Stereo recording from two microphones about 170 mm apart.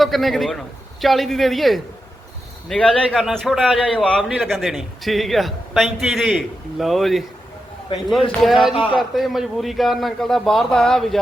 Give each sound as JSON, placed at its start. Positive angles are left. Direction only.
{"t": 0.0, "sound": "a man's voice", "side_deg": 0}
{"t": 7.9, "sound": "a man's voice", "side_deg": 25}
{"t": 8.3, "sound": "a man's voice", "side_deg": 0}
{"t": 8.7, "sound": "a man's voice", "side_deg": 30}
{"t": 9.0, "sound": "a man's voice", "side_deg": 0}